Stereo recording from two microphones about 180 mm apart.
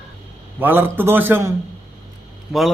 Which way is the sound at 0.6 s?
10° right (ahead or behind).